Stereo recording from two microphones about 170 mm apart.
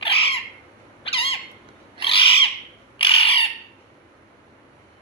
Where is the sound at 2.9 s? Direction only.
35° left (ahead or behind).